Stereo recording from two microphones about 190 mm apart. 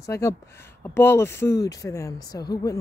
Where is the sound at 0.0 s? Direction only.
15° left (ahead or behind).